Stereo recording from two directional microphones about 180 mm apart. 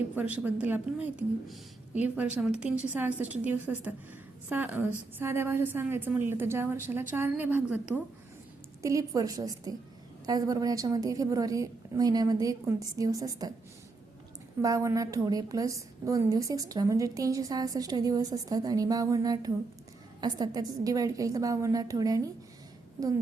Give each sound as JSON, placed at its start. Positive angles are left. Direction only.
{"t": 0.2, "sound": "a woman's voice", "side_deg": -10}
{"t": 8.8, "sound": "a woman's voice", "side_deg": -20}
{"t": 14.6, "sound": "a woman's voice", "side_deg": -15}